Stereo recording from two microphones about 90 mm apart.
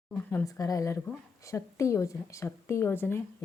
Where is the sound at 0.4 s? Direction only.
40° left (ahead or behind).